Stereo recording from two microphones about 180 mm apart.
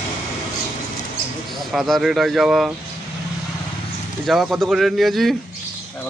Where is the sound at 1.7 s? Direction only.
Centre (ahead or behind).